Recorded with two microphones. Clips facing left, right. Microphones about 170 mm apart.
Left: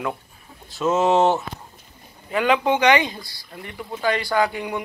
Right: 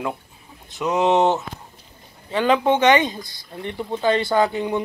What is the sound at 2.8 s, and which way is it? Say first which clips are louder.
Speech: right 2 dB; 20° right (ahead or behind).